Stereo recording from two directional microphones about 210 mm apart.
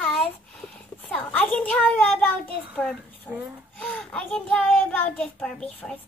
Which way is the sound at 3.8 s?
5° left (ahead or behind).